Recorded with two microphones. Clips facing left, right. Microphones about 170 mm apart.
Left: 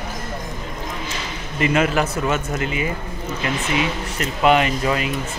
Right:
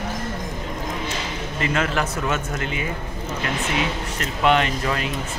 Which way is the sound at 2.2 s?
5° left (ahead or behind).